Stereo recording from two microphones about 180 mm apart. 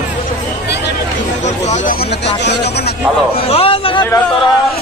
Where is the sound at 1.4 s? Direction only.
40° left (ahead or behind); by 2.9 s 65° left (ahead or behind).